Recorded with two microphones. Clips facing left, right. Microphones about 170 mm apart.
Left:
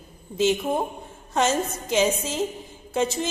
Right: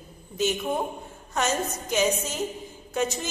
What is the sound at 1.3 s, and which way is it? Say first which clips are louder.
A woman's voice: left 4 dB; 30° left (ahead or behind).